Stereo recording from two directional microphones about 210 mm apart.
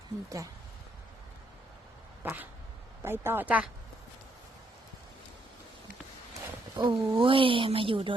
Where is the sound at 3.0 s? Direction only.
10° right (ahead or behind).